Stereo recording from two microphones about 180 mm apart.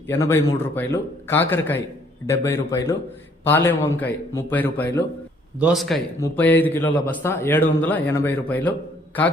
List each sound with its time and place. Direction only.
0.1 s a man's voice: 15° left (ahead or behind)
5.5 s a man's voice: 5° right (ahead or behind)
6.1 s a man's voice: 15° left (ahead or behind)